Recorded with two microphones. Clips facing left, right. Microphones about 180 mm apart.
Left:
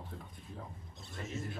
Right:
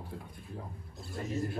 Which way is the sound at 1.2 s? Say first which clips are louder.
Right 7 dB; 35° right (ahead or behind).